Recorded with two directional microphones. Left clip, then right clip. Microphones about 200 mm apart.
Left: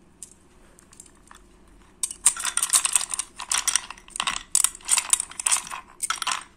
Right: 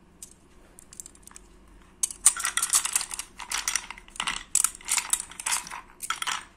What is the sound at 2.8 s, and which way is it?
Typing, 25° left (ahead or behind).